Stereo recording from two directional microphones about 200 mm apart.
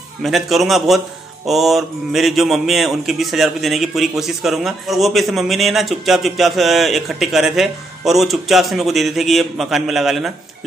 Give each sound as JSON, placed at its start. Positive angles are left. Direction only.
{"t": 0.2, "sound": "a man's voice", "side_deg": 0}